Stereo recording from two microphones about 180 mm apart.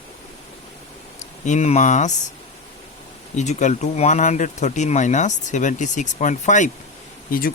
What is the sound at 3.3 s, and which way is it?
Speech, 40° left (ahead or behind).